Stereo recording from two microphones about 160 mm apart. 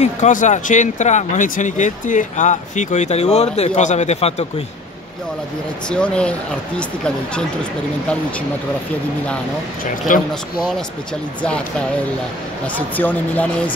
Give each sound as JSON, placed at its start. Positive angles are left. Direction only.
{"t": 0.0, "sound": "speech", "side_deg": 50}
{"t": 5.9, "sound": "speech", "side_deg": 5}
{"t": 10.1, "sound": "speech", "side_deg": 60}
{"t": 12.7, "sound": "speech", "side_deg": 10}